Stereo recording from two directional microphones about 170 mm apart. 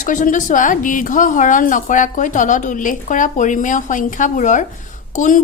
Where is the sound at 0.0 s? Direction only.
50° left (ahead or behind).